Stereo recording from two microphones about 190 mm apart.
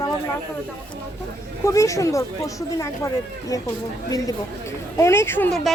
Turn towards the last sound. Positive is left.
turn(degrees=5)  # may be behind; listen again after turning